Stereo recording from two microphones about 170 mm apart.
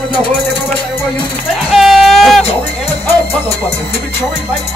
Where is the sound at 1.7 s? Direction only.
Centre (ahead or behind).